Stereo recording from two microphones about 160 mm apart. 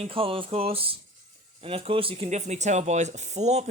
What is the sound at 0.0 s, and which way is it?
Speech, 35° right (ahead or behind).